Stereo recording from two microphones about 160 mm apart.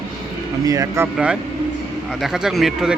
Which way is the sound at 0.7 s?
20° right (ahead or behind).